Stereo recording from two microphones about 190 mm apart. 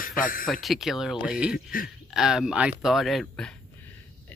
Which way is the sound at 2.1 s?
Centre (ahead or behind).